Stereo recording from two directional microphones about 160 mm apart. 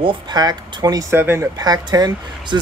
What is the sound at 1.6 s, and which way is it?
Speech, 25° right (ahead or behind).